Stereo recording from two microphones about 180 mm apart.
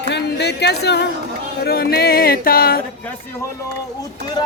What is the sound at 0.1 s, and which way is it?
Speech, 70° left (ahead or behind).